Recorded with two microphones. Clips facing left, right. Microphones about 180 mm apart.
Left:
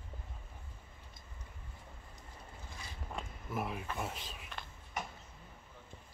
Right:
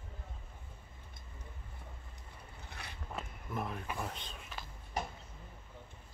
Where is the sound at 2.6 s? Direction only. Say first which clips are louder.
Right 3 dB; 65° right (ahead or behind).